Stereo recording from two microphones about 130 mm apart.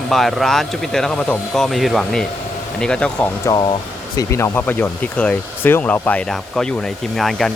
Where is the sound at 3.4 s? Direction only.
30° left (ahead or behind).